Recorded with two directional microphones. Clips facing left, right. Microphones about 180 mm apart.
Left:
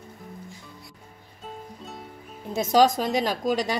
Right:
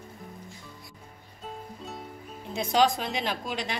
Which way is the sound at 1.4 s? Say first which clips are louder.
Even; centre (ahead or behind).